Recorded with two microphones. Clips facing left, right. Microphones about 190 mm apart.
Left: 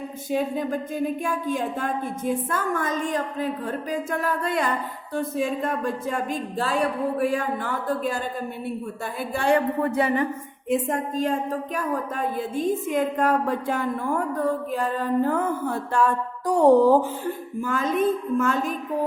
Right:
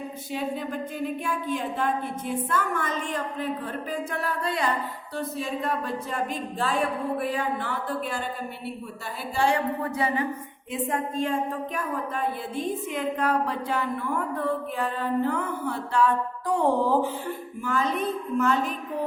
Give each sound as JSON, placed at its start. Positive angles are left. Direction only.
{"t": 0.3, "sound": "a woman's voice", "side_deg": 45}
{"t": 9.3, "sound": "a woman's voice", "side_deg": 55}
{"t": 10.7, "sound": "a woman's voice", "side_deg": 45}